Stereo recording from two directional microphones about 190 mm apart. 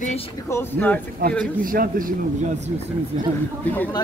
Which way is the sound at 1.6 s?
50° right (ahead or behind).